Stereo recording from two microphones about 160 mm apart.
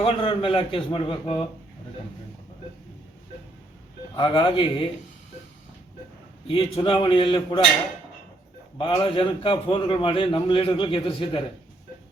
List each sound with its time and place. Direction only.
0.0 s a man's voice: 35° left (ahead or behind)
4.2 s speech: 30° left (ahead or behind)
6.5 s a man's voice: 35° left (ahead or behind)
8.8 s a man's voice: 30° left (ahead or behind)